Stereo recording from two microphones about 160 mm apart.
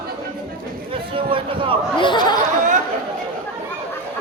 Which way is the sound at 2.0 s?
30° left (ahead or behind).